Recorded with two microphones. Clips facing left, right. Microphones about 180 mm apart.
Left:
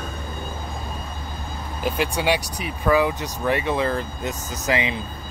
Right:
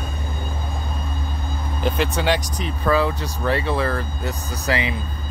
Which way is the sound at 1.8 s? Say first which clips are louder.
Right 1 dB; 10° left (ahead or behind).